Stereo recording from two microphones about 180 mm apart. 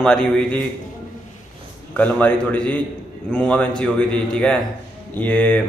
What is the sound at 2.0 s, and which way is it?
A man's voice, 10° left (ahead or behind).